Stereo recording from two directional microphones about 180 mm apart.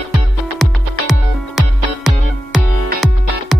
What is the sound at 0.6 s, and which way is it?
Music, centre (ahead or behind).